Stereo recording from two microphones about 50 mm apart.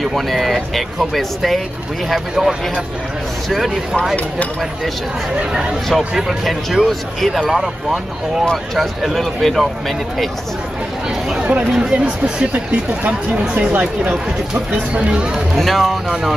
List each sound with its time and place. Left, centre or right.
0.0 s speech: centre
5.5 s speech: centre
5.9 s speech: centre
7.5 s speech: centre
11.7 s speech: centre
12.0 s speech: right
15.5 s speech: centre